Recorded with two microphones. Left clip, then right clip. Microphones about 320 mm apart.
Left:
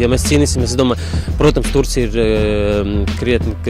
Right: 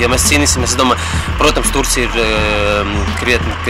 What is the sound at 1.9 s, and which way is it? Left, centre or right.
Speech, left.